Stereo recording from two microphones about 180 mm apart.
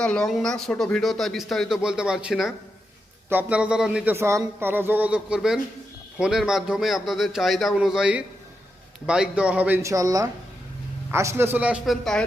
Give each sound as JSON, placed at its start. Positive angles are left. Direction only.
{"t": 0.0, "sound": "speech", "side_deg": 5}